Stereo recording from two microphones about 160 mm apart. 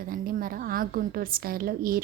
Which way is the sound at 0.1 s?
60° right (ahead or behind).